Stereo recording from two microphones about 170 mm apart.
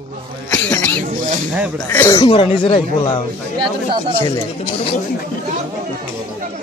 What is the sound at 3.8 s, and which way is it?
Speech, 35° right (ahead or behind).